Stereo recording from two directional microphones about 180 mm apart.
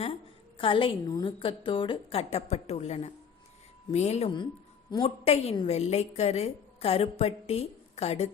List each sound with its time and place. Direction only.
0.6 s a woman's voice: 30° left (ahead or behind)
5.2 s a woman's voice: 35° left (ahead or behind)